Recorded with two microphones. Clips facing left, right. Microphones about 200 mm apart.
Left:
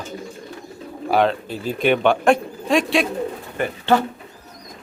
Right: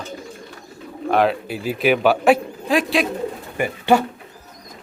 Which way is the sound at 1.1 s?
5° right (ahead or behind).